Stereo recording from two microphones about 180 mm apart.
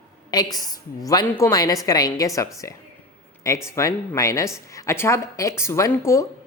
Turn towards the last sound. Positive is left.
turn(degrees=15)  # may be behind; listen again after turning